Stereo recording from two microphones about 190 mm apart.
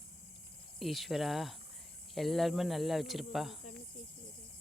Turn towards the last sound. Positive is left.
turn(degrees=0)  # may be behind; listen again after turning